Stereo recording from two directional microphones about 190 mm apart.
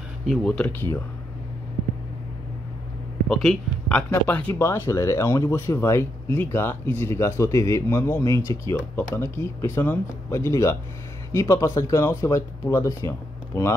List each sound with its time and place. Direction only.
0.3 s speech: 5° left (ahead or behind)
3.3 s speech: centre (ahead or behind)